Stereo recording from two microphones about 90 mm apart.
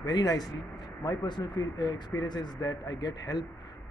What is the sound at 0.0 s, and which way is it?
Speech, 50° left (ahead or behind).